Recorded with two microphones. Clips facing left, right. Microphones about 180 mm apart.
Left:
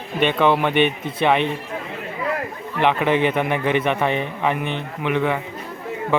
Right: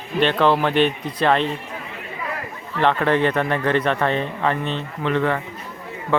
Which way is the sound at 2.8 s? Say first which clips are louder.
Even; 10° left (ahead or behind).